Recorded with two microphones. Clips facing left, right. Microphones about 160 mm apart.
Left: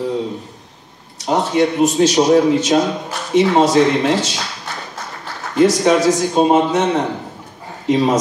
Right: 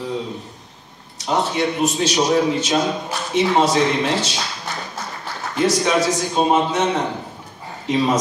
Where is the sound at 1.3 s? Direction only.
45° left (ahead or behind).